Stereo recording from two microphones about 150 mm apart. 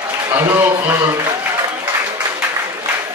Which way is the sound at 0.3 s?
15° right (ahead or behind).